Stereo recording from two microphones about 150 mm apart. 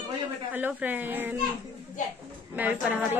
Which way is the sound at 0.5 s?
10° right (ahead or behind).